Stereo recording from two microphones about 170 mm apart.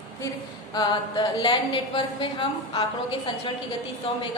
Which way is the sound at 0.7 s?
25° left (ahead or behind).